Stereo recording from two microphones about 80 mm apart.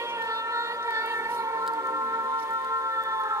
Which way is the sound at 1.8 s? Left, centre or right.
Right.